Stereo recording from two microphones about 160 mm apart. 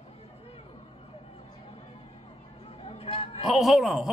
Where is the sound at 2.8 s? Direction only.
35° left (ahead or behind).